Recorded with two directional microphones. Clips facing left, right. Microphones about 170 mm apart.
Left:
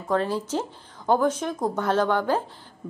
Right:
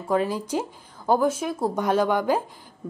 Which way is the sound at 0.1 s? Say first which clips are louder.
Right 1 dB; 10° right (ahead or behind).